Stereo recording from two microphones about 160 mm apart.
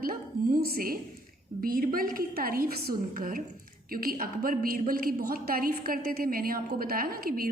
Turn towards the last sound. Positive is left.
turn(degrees=-65)  # may be behind; listen again after turning